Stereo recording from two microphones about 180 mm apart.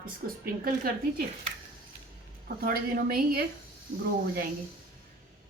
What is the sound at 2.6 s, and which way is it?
Speech, 55° right (ahead or behind).